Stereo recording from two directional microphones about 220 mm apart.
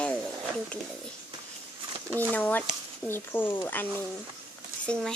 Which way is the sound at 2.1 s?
10° left (ahead or behind).